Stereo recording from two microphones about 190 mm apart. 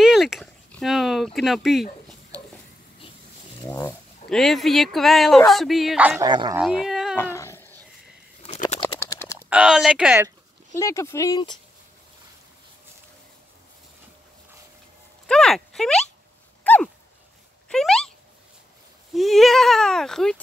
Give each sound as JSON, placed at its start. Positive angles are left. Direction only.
{"t": 0.0, "sound": "a sound", "side_deg": 0}
{"t": 3.6, "sound": "speech", "side_deg": 15}
{"t": 4.3, "sound": "speech", "side_deg": 0}
{"t": 6.2, "sound": "speech", "side_deg": -25}
{"t": 6.5, "sound": "speech", "side_deg": 0}
{"t": 7.2, "sound": "cat", "side_deg": 15}
{"t": 8.4, "sound": "bird", "side_deg": 35}
{"t": 9.0, "sound": "a sound", "side_deg": 15}
{"t": 9.5, "sound": "speech", "side_deg": -5}
{"t": 10.7, "sound": "speech", "side_deg": 15}
{"t": 15.2, "sound": "speech", "side_deg": 5}
{"t": 16.6, "sound": "dog", "side_deg": 10}
{"t": 17.6, "sound": "speech", "side_deg": 5}
{"t": 19.1, "sound": "speech", "side_deg": 0}